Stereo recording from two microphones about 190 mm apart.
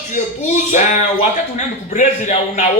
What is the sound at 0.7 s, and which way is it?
Music, 40° left (ahead or behind).